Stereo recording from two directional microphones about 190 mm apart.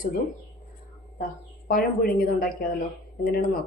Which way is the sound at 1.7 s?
50° left (ahead or behind).